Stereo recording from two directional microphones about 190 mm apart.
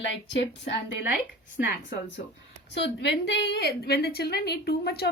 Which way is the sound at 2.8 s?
65° left (ahead or behind).